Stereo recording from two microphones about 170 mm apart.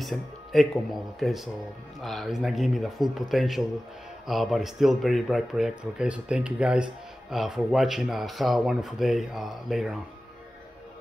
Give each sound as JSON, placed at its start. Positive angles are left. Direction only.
{"t": 0.0, "sound": "speech", "side_deg": 0}